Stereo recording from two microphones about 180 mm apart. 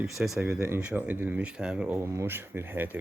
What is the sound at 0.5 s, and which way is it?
Speech, 15° right (ahead or behind).